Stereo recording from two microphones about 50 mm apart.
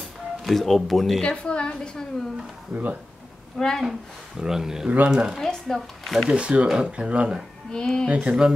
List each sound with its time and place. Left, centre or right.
0.4 s speech: centre
1.2 s a woman's voice: left
2.7 s speech: right
3.5 s speech: centre
4.4 s speech: centre
4.8 s speech: right
5.1 s speech: centre
5.4 s speech: centre
6.3 s speech: right
7.7 s speech: centre
8.2 s speech: centre